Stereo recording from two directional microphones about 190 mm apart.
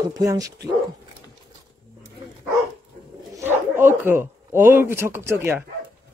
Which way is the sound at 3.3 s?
10° right (ahead or behind).